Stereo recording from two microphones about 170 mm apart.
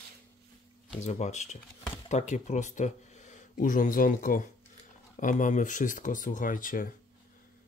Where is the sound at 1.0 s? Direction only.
45° left (ahead or behind).